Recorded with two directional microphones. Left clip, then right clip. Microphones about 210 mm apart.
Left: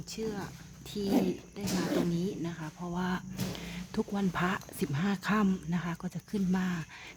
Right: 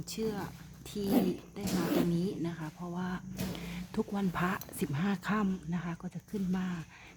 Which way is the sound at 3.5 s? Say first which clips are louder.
Left 1 dB; centre (ahead or behind).